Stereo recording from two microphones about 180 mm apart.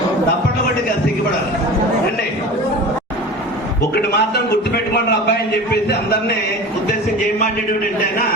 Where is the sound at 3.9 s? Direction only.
60° left (ahead or behind).